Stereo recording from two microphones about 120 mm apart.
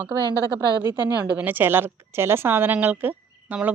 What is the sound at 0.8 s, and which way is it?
Speech, 35° left (ahead or behind).